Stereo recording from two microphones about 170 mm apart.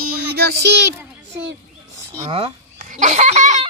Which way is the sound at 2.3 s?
35° right (ahead or behind).